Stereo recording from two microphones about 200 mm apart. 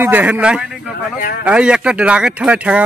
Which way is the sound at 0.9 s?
45° left (ahead or behind).